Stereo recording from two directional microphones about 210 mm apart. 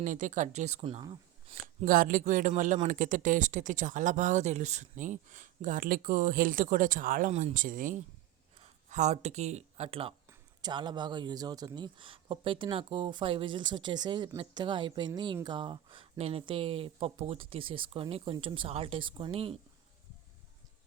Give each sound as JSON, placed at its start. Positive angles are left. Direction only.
{"t": 0.0, "sound": "speech", "side_deg": -35}
{"t": 1.9, "sound": "speech", "side_deg": -40}